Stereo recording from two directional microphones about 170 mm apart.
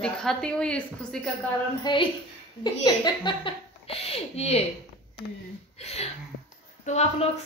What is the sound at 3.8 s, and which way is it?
Speech, 35° left (ahead or behind).